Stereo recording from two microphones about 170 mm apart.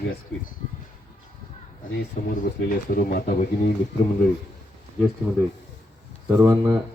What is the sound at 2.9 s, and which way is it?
Speech, 60° left (ahead or behind).